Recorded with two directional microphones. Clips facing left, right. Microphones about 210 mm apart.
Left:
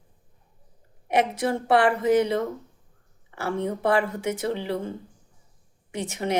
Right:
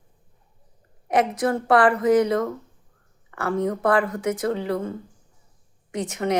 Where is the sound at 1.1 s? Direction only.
25° left (ahead or behind).